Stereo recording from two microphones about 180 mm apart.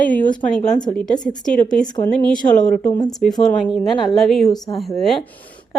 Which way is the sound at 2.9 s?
20° left (ahead or behind).